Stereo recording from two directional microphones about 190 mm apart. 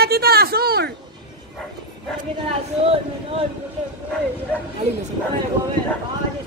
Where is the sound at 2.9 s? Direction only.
30° right (ahead or behind).